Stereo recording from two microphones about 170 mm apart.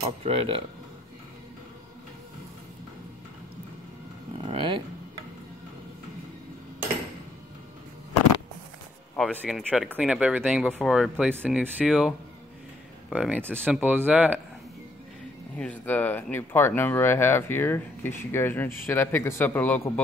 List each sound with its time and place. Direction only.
0.2 s speech: 30° right (ahead or behind)
4.4 s speech: 30° right (ahead or behind)
9.1 s speech: 5° left (ahead or behind)
9.9 s speech: 5° right (ahead or behind)
15.5 s speech: 10° left (ahead or behind)